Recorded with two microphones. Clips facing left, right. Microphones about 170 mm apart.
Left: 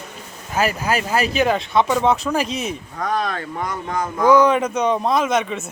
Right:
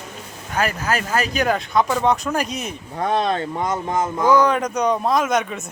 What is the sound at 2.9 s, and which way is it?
Speech, 25° right (ahead or behind).